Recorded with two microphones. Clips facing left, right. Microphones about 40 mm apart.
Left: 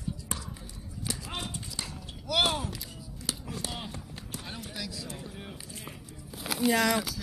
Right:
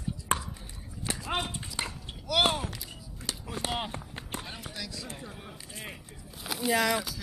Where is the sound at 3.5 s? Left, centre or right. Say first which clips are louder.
Right 5 dB; right.